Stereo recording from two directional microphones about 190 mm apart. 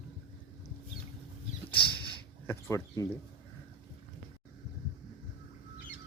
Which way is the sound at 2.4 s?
10° left (ahead or behind).